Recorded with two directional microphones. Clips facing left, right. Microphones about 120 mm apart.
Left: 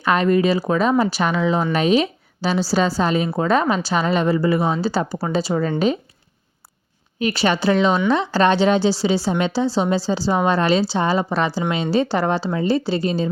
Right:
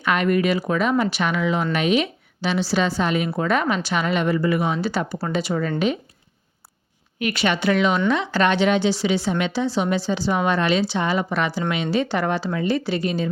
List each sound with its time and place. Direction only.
0.0 s a woman's voice: 35° left (ahead or behind)
7.2 s a woman's voice: 35° left (ahead or behind)